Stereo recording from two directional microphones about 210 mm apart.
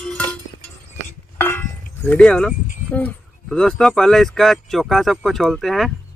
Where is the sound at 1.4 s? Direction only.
10° left (ahead or behind).